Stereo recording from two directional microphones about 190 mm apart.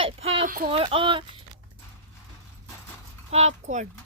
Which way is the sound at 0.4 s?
45° right (ahead or behind).